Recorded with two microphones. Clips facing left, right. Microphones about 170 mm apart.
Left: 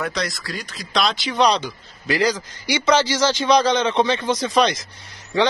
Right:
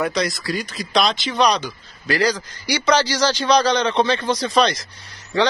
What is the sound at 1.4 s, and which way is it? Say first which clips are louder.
A man's voice: even; 25° left (ahead or behind).